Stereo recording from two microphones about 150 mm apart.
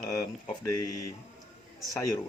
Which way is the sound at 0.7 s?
25° left (ahead or behind).